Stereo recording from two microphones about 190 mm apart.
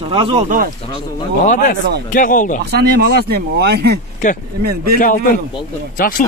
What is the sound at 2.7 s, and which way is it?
Speech, 60° right (ahead or behind).